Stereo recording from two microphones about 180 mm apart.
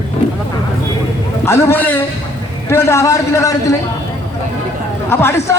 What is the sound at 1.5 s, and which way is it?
A man's voice, 15° left (ahead or behind).